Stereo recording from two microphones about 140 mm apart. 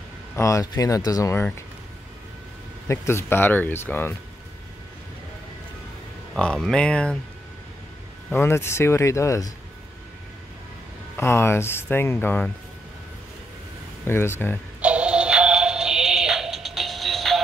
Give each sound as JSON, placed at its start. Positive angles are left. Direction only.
{"t": 0.4, "sound": "speech", "side_deg": 25}
{"t": 2.9, "sound": "speech", "side_deg": 20}
{"t": 6.3, "sound": "speech", "side_deg": 5}
{"t": 8.3, "sound": "speech", "side_deg": 15}
{"t": 11.1, "sound": "speech", "side_deg": 15}
{"t": 14.0, "sound": "speech", "side_deg": 15}
{"t": 14.8, "sound": "synthetic singing", "side_deg": -10}